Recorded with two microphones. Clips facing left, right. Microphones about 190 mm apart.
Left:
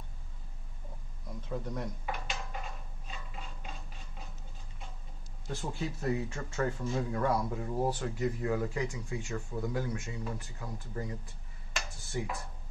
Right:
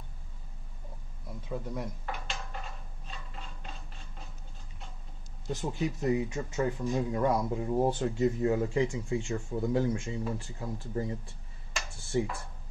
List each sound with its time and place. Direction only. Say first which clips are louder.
1.5 s speech: right 1 dB; 5° right (ahead or behind)
2.0 s dishes: even; 5° left (ahead or behind)
3.1 s a sound: even; 5° left (ahead or behind)
5.5 s speech: right 5 dB; 20° right (ahead or behind)